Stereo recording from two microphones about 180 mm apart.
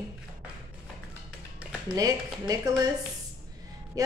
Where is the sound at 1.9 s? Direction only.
20° right (ahead or behind).